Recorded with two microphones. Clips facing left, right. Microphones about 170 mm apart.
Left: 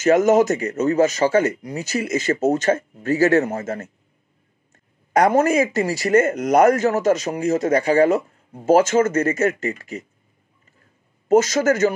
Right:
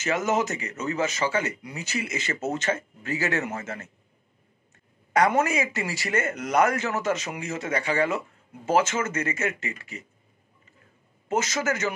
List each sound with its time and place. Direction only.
0.0 s speech: 45° left (ahead or behind)
5.1 s speech: 40° left (ahead or behind)
11.2 s speech: 40° left (ahead or behind)